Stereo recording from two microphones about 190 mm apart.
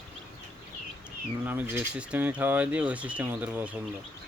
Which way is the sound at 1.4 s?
10° right (ahead or behind).